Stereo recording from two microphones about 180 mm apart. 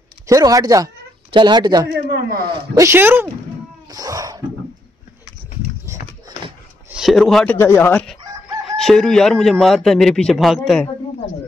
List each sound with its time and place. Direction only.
0.3 s speech: 20° right (ahead or behind)
1.9 s speech: 60° right (ahead or behind)
2.5 s speech: 20° right (ahead or behind)
5.9 s a sound: 15° right (ahead or behind)
6.9 s speech: centre (ahead or behind)
7.5 s speech: 15° left (ahead or behind)